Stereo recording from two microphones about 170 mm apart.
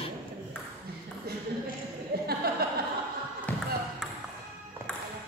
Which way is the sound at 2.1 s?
70° right (ahead or behind).